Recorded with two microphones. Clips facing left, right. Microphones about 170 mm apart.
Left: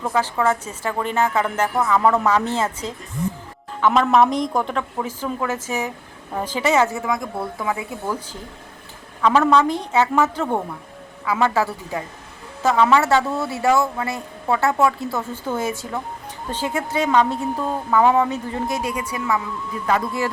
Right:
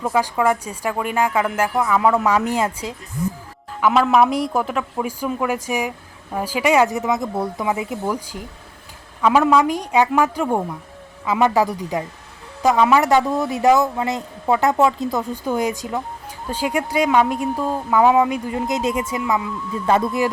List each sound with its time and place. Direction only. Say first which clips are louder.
0.0 s a woman's voice: right 2 dB; 10° right (ahead or behind)